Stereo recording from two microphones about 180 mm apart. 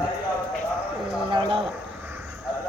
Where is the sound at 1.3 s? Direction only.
25° right (ahead or behind).